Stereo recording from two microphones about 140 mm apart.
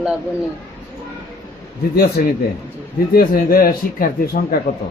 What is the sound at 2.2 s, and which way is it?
A man's voice, 80° left.